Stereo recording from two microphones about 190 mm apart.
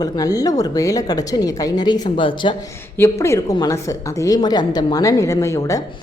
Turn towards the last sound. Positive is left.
turn(degrees=15)  # may be behind; listen again after turning